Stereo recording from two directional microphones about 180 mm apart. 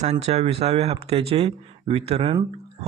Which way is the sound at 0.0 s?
35° right (ahead or behind).